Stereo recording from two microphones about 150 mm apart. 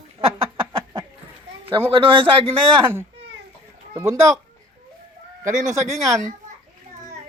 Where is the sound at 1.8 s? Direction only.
35° right (ahead or behind).